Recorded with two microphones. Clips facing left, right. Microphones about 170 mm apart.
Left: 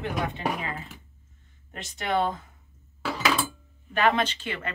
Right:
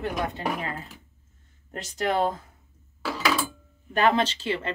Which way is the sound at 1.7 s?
40° right (ahead or behind).